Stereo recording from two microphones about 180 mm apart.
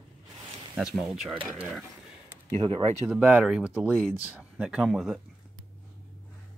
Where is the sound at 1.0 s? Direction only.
Centre (ahead or behind).